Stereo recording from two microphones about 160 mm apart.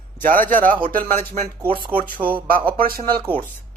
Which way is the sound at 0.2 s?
60° right (ahead or behind).